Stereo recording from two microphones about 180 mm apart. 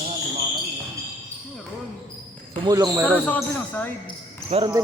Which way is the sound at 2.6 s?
20° right (ahead or behind).